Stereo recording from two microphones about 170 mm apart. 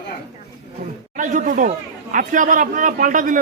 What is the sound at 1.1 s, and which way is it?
A man's voice, 50° right (ahead or behind).